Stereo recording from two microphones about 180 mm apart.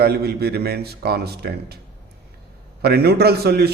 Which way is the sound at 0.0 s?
60° right (ahead or behind).